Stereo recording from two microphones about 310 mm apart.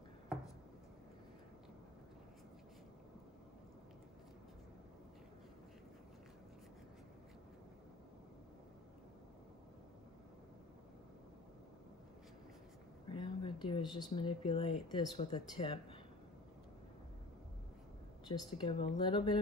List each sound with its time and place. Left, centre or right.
13.1 s a sound: centre
14.1 s speech: centre
18.3 s speech: centre